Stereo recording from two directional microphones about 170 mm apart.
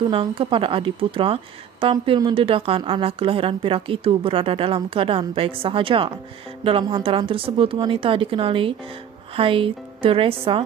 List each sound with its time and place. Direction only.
0.1 s a woman's voice: 30° right (ahead or behind)